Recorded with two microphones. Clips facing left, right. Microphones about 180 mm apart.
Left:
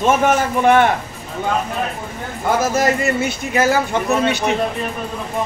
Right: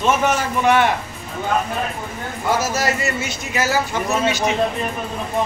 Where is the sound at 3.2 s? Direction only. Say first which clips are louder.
Left 6 dB; 55° left (ahead or behind).